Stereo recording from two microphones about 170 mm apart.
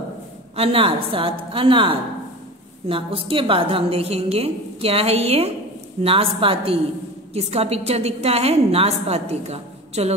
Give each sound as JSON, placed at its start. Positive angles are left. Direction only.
{"t": 0.6, "sound": "a woman's voice", "side_deg": -35}